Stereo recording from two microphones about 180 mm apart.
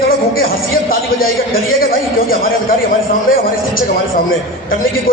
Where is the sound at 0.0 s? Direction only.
55° left (ahead or behind).